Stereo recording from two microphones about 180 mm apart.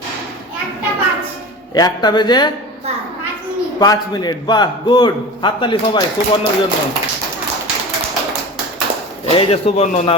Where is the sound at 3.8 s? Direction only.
20° left (ahead or behind).